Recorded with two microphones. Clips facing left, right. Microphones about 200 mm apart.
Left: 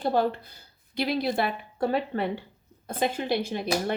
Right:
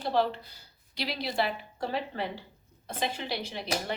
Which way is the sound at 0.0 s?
50° left (ahead or behind).